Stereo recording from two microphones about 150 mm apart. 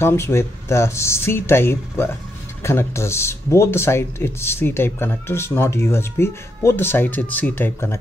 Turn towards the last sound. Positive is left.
turn(degrees=15)  # may be behind; listen again after turning